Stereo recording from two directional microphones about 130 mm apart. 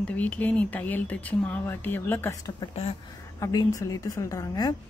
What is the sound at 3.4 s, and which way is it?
A woman's voice, 25° left (ahead or behind).